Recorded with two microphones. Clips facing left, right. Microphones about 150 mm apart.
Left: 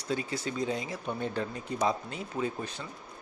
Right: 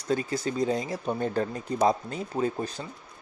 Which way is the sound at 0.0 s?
45° right (ahead or behind).